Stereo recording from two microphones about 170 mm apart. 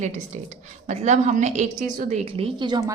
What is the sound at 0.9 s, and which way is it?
A woman's voice, 45° right (ahead or behind).